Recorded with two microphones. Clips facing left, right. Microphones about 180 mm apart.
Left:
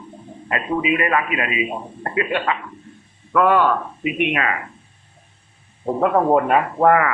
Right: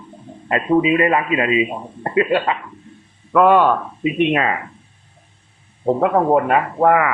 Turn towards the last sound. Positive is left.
turn(degrees=-10)  # may be behind; listen again after turning